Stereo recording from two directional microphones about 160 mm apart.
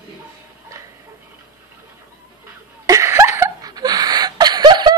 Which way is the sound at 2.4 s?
15° right (ahead or behind).